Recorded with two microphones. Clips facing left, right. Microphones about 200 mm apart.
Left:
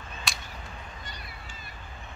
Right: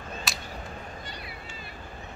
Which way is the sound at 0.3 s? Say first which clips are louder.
Left 2 dB; centre (ahead or behind).